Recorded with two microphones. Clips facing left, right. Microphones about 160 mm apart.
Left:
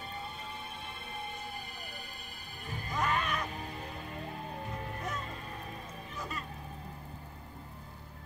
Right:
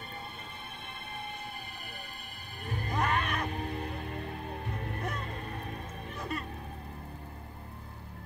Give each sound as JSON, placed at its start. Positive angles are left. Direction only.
{"t": 2.6, "sound": "music", "side_deg": -55}